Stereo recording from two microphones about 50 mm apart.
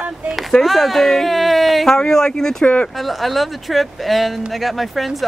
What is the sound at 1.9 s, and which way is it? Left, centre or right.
Speech, centre.